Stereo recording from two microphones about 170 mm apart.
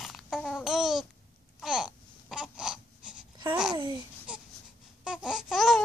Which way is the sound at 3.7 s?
25° right (ahead or behind).